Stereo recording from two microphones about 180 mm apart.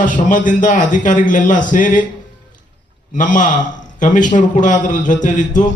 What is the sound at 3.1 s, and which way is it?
A man's voice, 45° left (ahead or behind).